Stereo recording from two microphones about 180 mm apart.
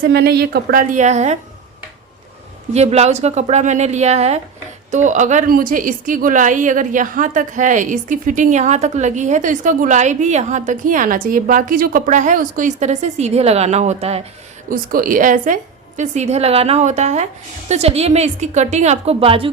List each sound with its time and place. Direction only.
0.0 s speech: 65° right (ahead or behind); by 1.4 s 40° right (ahead or behind)
2.7 s a woman's voice: 35° right (ahead or behind)
14.7 s a woman's voice: 50° right (ahead or behind); by 19.5 s 30° right (ahead or behind)